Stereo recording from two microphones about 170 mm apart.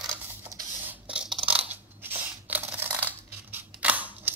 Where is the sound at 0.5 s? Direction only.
20° left (ahead or behind).